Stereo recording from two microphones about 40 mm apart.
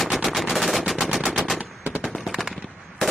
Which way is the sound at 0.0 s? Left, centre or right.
Centre.